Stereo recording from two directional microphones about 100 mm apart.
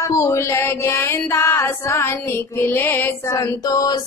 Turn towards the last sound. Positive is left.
turn(degrees=40)  # may be behind; listen again after turning